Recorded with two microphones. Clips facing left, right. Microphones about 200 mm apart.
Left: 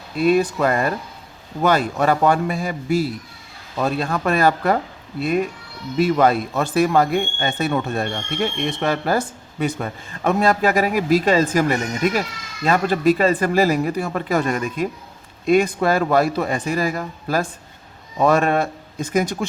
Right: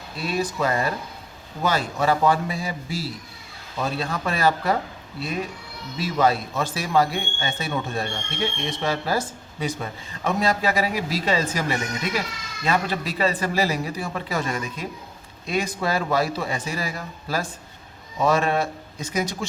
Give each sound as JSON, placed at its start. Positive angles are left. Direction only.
{"t": 0.2, "sound": "speech", "side_deg": 55}
{"t": 6.0, "sound": "speech", "side_deg": 55}